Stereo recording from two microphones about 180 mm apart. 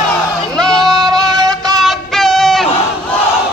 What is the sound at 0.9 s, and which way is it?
Music, 20° right (ahead or behind).